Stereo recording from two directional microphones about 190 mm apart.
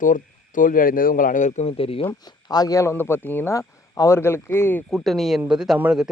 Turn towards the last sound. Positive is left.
turn(degrees=-5)  # may be behind; listen again after turning